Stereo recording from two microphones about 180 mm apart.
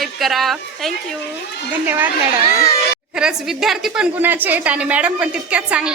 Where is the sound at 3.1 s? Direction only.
5° right (ahead or behind).